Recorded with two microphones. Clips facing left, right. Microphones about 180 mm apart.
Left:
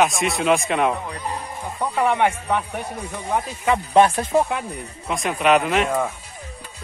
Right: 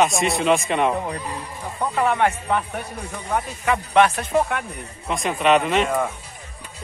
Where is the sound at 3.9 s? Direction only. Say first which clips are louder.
Left 2 dB; 30° left (ahead or behind).